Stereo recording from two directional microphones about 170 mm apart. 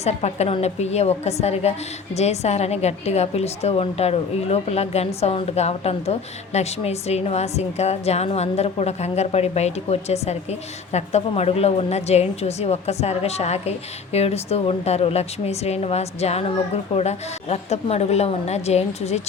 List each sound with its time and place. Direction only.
0.0 s a woman's voice: 40° left (ahead or behind)